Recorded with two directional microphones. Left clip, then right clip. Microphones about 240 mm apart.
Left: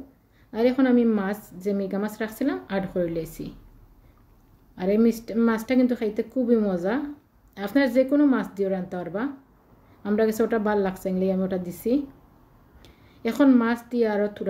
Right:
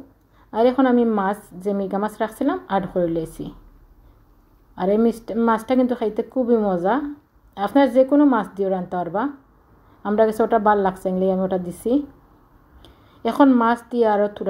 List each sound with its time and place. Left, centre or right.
0.5 s a woman's voice: centre
4.7 s a woman's voice: centre